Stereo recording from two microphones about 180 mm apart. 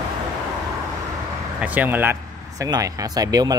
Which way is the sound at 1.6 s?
10° right (ahead or behind).